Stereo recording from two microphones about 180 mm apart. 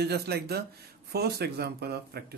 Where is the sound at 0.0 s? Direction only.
65° right (ahead or behind).